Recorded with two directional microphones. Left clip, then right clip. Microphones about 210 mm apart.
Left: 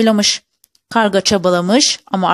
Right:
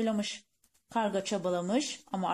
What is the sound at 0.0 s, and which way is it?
Speech, 45° left (ahead or behind).